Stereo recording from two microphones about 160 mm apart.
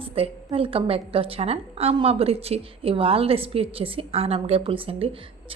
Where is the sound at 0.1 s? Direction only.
35° right (ahead or behind).